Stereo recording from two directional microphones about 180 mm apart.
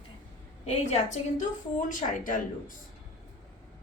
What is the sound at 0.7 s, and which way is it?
Speech, 40° left (ahead or behind).